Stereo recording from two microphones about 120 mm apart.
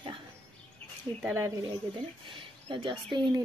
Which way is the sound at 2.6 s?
45° right (ahead or behind).